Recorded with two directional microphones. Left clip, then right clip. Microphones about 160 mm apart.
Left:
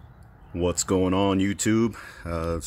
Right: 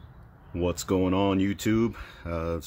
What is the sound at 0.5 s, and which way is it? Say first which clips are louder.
Speech: left 3 dB; 10° left (ahead or behind).